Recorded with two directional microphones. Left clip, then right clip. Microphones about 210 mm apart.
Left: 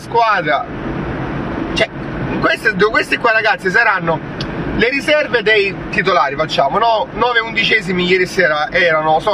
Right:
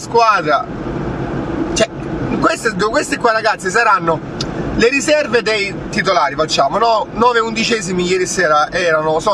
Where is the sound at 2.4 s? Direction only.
25° right (ahead or behind).